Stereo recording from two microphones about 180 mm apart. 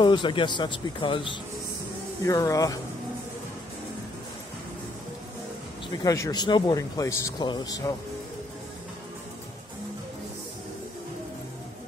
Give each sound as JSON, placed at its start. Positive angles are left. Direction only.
{"t": 0.0, "sound": "speech", "side_deg": 25}
{"t": 5.9, "sound": "speech", "side_deg": 20}